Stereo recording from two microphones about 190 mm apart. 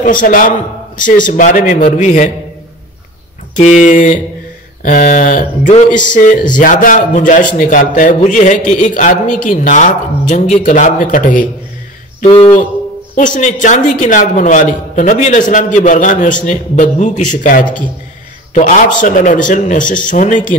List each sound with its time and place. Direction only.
0.0 s speech: 45° left (ahead or behind)
3.5 s speech: 40° left (ahead or behind)
12.3 s speech: 30° left (ahead or behind)
13.1 s speech: 40° left (ahead or behind)
18.9 s speech: 40° left (ahead or behind)